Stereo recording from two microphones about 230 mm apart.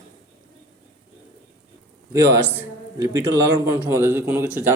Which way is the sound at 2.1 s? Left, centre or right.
Centre.